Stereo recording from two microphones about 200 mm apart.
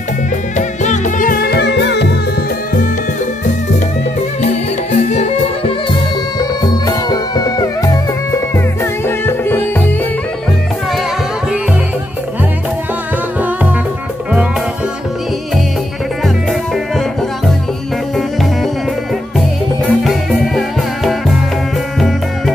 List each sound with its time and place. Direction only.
0.6 s music: 40° left (ahead or behind); by 2.1 s 60° left (ahead or behind)
4.9 s music: 35° left (ahead or behind)
6.6 s music: 20° left (ahead or behind)
19.3 s music: centre (ahead or behind)